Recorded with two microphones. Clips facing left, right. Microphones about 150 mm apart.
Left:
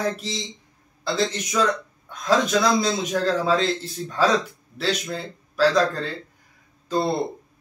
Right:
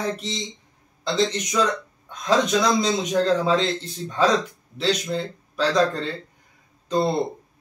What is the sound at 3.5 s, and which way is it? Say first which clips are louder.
Speech: even; 5° left (ahead or behind).